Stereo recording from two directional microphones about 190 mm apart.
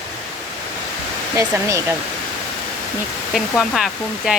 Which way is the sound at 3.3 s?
Centre (ahead or behind).